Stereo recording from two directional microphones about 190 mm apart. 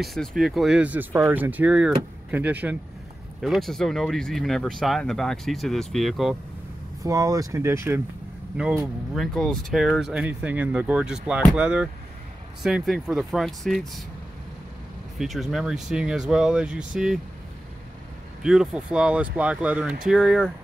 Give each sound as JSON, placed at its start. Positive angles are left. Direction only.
{"t": 0.0, "sound": "speech", "side_deg": 0}
{"t": 7.0, "sound": "speech", "side_deg": -20}
{"t": 15.1, "sound": "speech", "side_deg": 0}
{"t": 18.4, "sound": "speech", "side_deg": -5}